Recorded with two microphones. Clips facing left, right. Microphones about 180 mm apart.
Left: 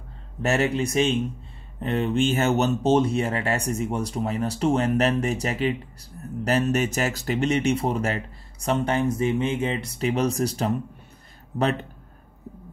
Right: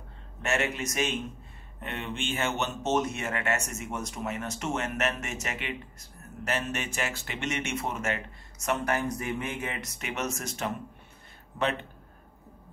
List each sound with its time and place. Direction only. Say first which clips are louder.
0.4 s speech: left 7 dB; 35° left (ahead or behind)